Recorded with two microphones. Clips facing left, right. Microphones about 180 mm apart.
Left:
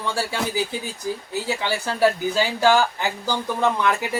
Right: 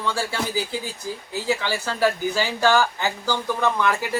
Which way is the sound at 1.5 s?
15° left (ahead or behind).